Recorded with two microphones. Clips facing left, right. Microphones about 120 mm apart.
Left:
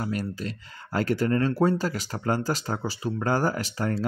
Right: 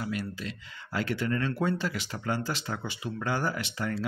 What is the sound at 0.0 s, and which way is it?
Speech, 40° left (ahead or behind).